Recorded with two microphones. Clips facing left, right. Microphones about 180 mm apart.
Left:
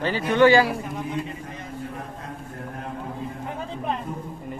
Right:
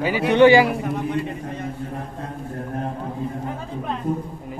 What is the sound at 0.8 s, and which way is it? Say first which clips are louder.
Speech: right 5 dB; 65° right (ahead or behind).